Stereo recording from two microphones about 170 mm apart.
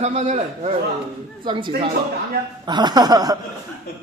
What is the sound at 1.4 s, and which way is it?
A man's voice, 30° right (ahead or behind).